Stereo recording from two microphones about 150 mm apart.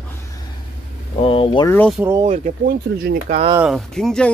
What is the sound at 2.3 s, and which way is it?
Speech, 65° right (ahead or behind).